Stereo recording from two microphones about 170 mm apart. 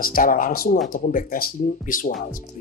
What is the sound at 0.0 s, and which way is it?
Speech, 55° left (ahead or behind).